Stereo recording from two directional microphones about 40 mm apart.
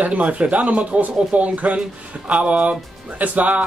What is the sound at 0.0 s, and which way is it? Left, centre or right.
Speech, right.